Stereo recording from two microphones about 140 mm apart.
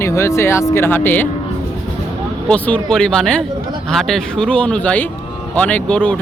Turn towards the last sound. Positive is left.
turn(degrees=10)  # may be behind; listen again after turning